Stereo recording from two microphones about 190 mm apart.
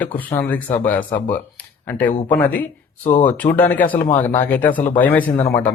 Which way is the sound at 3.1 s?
45° left (ahead or behind).